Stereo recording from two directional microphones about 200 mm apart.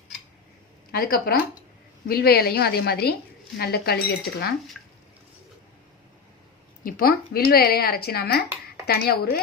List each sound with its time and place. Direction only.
0.9 s a woman's voice: 45° left (ahead or behind)
6.8 s a woman's voice: 50° left (ahead or behind)